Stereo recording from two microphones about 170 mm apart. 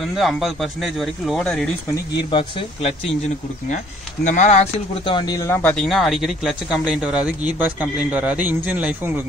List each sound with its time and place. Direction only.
0.0 s speech: centre (ahead or behind)
2.3 s speech: 35° left (ahead or behind)
3.7 s speech: 45° left (ahead or behind); by 9.1 s 10° right (ahead or behind)